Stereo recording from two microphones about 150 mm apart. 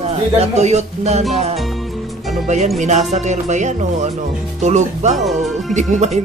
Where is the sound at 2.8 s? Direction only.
50° right (ahead or behind).